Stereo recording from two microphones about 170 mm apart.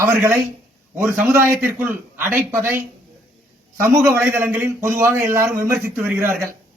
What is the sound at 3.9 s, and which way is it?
A man's voice, 15° right (ahead or behind).